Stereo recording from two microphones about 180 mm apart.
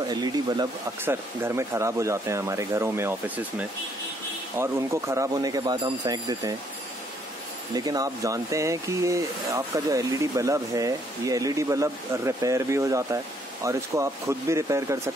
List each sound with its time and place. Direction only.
0.1 s speech: 20° right (ahead or behind)
7.7 s speech: 20° right (ahead or behind)